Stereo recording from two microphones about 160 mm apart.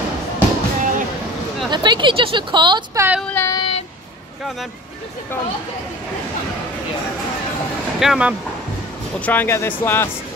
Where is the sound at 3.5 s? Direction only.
35° left (ahead or behind).